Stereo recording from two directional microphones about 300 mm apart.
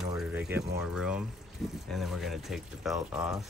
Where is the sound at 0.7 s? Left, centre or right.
Centre.